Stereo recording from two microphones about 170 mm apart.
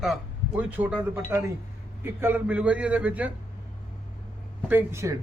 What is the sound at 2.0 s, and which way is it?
A man's voice, 10° right (ahead or behind).